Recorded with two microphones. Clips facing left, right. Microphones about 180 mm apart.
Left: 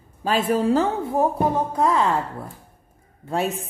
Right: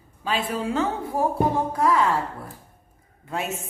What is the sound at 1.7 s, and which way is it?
Speech, 25° left (ahead or behind).